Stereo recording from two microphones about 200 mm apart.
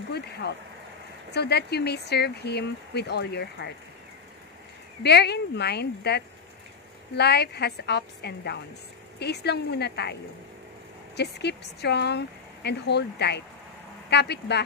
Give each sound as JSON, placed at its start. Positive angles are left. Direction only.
{"t": 0.4, "sound": "speech", "side_deg": 55}
{"t": 5.0, "sound": "speech", "side_deg": 55}
{"t": 11.1, "sound": "speech", "side_deg": 55}